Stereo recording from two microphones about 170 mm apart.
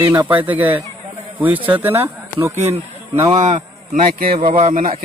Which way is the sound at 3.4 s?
45° right (ahead or behind).